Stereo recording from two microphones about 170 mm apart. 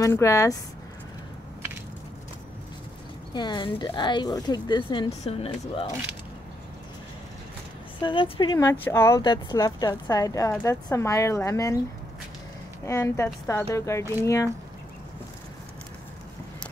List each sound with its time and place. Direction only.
0.0 s speech: 20° left (ahead or behind)
3.3 s speech: 25° left (ahead or behind)
5.2 s speech: 40° left (ahead or behind)
8.0 s speech: 30° left (ahead or behind)
8.6 s speech: 15° left (ahead or behind)
12.8 s speech: 15° left (ahead or behind)